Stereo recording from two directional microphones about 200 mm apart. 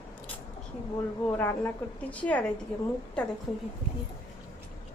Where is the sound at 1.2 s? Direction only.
10° left (ahead or behind).